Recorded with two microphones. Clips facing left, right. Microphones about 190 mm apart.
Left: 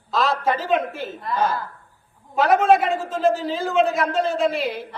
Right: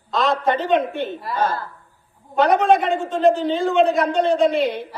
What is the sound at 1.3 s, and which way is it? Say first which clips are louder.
A man's voice: even; 10° left (ahead or behind).